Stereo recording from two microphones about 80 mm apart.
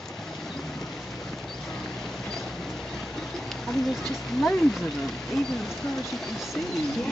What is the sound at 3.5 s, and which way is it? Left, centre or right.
Speech, centre.